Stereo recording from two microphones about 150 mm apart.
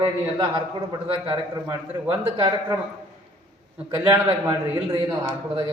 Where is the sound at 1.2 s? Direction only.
35° right (ahead or behind).